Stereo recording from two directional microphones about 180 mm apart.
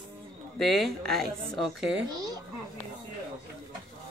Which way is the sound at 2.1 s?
20° right (ahead or behind).